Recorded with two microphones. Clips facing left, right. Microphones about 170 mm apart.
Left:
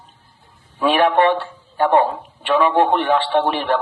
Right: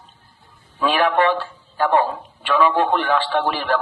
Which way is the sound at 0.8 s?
25° left (ahead or behind).